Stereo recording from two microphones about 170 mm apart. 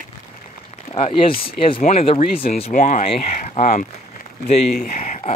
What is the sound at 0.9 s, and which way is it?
Speech, 30° left (ahead or behind).